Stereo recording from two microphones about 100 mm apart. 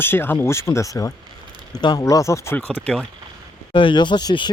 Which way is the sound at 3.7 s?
50° left (ahead or behind).